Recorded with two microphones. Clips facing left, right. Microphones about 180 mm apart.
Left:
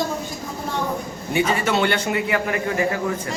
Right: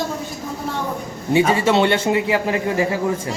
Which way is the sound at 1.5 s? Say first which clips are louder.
Right 4 dB; 25° right (ahead or behind).